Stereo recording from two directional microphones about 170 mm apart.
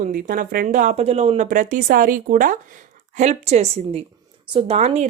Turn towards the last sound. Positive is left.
turn(degrees=-40)  # may be behind; listen again after turning